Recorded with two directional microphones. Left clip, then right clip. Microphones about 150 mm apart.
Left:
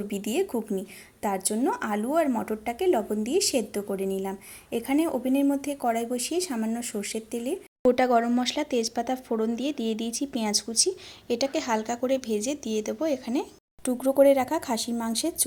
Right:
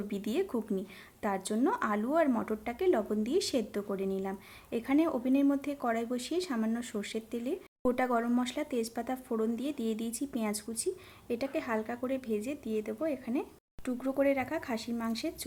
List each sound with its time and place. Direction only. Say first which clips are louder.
0.3 s speech: left 5 dB; 15° left (ahead or behind); by 15.4 s 35° left (ahead or behind)